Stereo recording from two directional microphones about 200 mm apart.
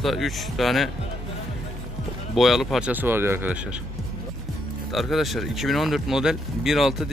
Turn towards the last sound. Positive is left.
turn(degrees=0)  # may be behind; listen again after turning